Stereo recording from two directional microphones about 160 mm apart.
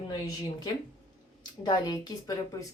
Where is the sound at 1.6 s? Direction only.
25° left (ahead or behind).